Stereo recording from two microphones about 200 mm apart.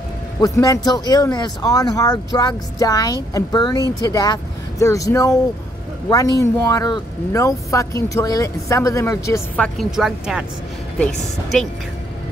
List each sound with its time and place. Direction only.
0.4 s speech: 15° left (ahead or behind)
9.8 s speech: centre (ahead or behind)